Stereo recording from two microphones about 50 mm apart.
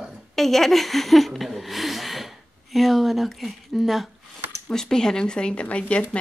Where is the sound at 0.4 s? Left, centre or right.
Centre.